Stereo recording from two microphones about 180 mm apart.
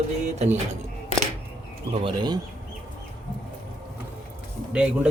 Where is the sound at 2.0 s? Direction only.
25° right (ahead or behind).